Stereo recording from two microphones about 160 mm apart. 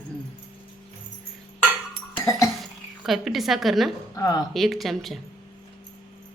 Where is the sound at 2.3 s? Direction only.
20° left (ahead or behind).